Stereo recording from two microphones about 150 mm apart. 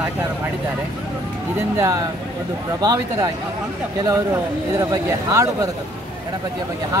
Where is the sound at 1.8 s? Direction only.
20° right (ahead or behind).